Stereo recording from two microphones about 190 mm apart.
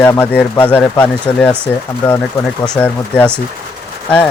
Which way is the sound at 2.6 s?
5° left (ahead or behind).